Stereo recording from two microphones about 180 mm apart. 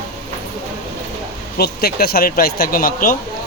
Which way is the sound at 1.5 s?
60° left (ahead or behind).